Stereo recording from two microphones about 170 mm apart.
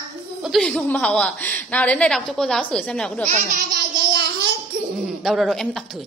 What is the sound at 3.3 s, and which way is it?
Speech, 50° right (ahead or behind).